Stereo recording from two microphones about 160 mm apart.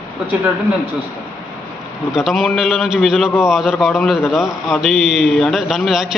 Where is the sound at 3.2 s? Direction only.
15° left (ahead or behind).